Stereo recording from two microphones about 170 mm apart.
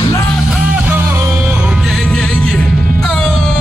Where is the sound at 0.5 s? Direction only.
10° right (ahead or behind).